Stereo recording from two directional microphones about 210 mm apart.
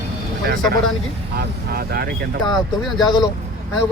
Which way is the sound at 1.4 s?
50° right (ahead or behind).